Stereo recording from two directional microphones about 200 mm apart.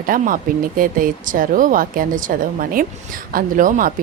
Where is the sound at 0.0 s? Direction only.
45° right (ahead or behind).